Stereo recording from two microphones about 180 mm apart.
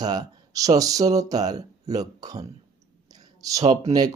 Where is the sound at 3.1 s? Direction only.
20° right (ahead or behind).